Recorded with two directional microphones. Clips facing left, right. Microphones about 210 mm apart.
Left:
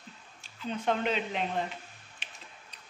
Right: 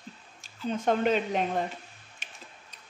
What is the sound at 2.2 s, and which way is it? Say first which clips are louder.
Tick-tock: right 1 dB; 45° right (ahead or behind).